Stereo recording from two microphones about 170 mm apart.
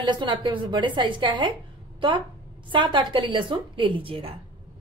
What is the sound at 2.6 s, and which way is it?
A woman's voice, 30° right (ahead or behind).